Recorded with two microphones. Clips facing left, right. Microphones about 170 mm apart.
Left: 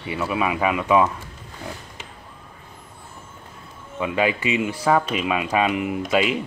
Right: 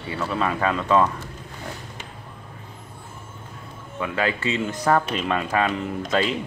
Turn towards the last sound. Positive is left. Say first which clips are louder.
# left 2 dB
turn(degrees=10)  # may be behind; listen again after turning